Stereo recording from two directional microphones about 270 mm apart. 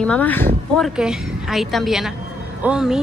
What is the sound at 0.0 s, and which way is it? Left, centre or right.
Speech, centre.